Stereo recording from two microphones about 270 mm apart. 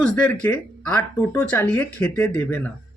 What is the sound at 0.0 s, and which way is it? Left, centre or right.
Speech, centre.